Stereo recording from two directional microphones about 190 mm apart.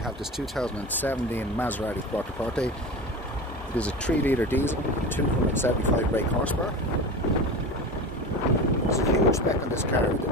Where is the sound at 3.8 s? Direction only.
10° left (ahead or behind).